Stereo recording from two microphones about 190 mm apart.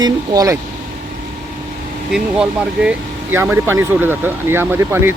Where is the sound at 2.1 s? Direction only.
5° right (ahead or behind).